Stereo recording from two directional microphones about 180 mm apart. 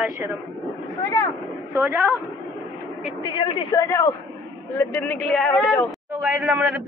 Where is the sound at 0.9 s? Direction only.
20° left (ahead or behind).